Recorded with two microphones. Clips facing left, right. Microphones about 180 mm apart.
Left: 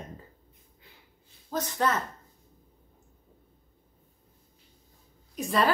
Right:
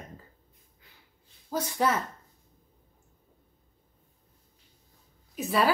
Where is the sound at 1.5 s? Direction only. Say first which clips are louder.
Right 1 dB; 10° right (ahead or behind).